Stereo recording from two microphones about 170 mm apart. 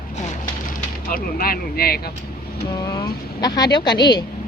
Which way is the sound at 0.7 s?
60° left (ahead or behind).